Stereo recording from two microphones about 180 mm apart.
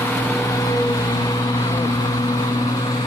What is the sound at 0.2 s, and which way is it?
Vehicle, 15° left (ahead or behind).